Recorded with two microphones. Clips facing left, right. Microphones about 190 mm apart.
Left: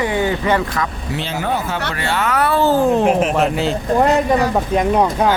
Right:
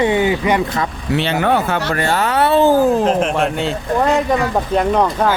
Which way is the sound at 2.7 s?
5° right (ahead or behind).